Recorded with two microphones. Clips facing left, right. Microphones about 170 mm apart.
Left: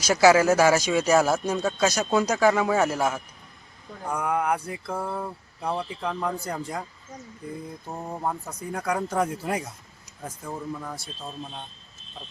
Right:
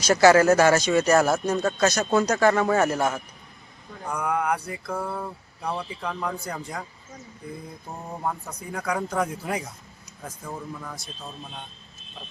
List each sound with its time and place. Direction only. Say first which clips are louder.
0.0 s speech: right 1 dB; 5° left (ahead or behind)
6.6 s speech: left 2 dB; 25° left (ahead or behind)
7.9 s speech: left 1 dB; 5° left (ahead or behind)